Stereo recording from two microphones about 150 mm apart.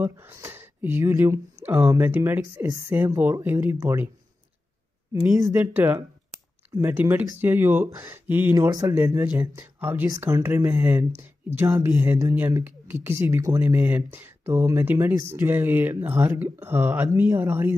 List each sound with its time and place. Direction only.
0.0 s speech: 15° right (ahead or behind)
5.4 s speech: 15° right (ahead or behind)
8.5 s speech: 25° right (ahead or behind)
8.9 s speech: 15° right (ahead or behind)